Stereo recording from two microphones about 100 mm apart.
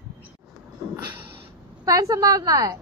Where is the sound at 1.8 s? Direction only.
35° right (ahead or behind).